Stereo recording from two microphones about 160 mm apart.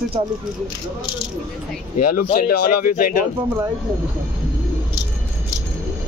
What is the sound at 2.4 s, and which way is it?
Speech, 65° left (ahead or behind).